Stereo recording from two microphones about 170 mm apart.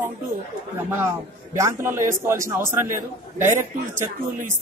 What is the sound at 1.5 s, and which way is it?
A man's voice, 15° right (ahead or behind).